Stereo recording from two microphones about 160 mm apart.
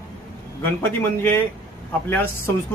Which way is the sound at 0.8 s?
15° left (ahead or behind).